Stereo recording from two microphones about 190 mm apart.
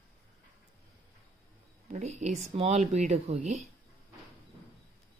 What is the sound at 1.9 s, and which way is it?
A woman's voice, 35° right (ahead or behind).